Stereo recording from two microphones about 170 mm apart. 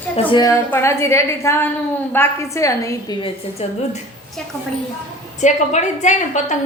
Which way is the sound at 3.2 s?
40° left (ahead or behind).